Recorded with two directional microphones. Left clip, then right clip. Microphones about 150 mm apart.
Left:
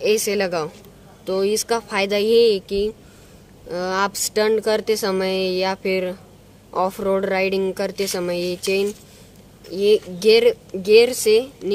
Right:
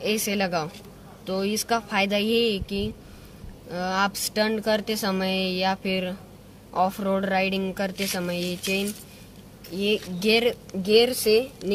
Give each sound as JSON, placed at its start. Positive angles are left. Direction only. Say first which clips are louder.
{"t": 0.0, "sound": "a woman's voice", "louder": "left 7 dB", "side_deg": 40}